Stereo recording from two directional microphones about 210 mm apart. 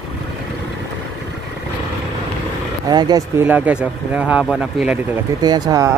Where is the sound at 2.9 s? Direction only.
20° right (ahead or behind).